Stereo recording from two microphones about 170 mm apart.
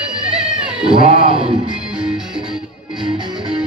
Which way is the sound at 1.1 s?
35° right (ahead or behind).